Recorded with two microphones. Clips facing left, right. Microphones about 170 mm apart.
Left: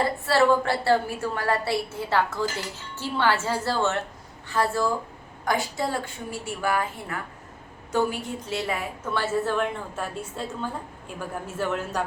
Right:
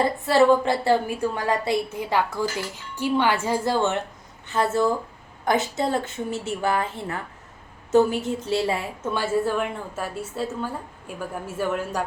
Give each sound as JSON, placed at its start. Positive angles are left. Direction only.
{"t": 0.3, "sound": "a woman's voice", "side_deg": -15}
{"t": 8.4, "sound": "a woman's voice", "side_deg": -30}
{"t": 9.1, "sound": "a woman's voice", "side_deg": -10}